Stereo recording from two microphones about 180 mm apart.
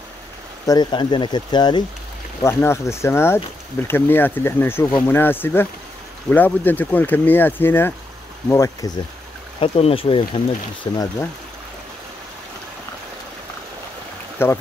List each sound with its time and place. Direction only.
0.7 s speech: 25° left (ahead or behind)
9.6 s speech: 30° left (ahead or behind)
14.4 s speech: 15° left (ahead or behind)